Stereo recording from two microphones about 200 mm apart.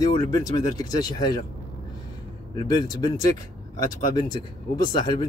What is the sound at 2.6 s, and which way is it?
Speech, 20° left (ahead or behind).